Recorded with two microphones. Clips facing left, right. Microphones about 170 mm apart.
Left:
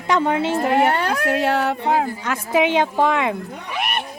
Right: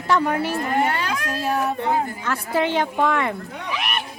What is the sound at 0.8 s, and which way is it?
Speech, 60° left (ahead or behind).